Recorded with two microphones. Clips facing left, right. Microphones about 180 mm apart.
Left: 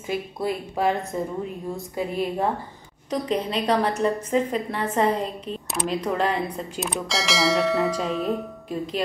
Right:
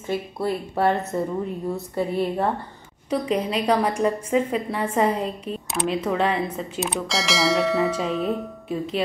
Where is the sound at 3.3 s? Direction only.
10° right (ahead or behind).